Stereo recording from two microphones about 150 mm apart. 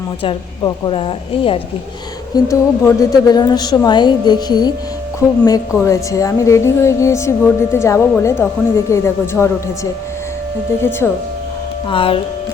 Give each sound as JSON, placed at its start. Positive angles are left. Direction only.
{"t": 0.2, "sound": "a woman's voice", "side_deg": 35}
{"t": 2.3, "sound": "a woman's voice", "side_deg": 20}
{"t": 11.9, "sound": "a woman's voice", "side_deg": 35}